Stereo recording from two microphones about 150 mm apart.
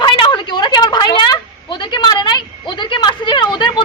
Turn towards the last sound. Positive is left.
turn(degrees=30)  # may be behind; listen again after turning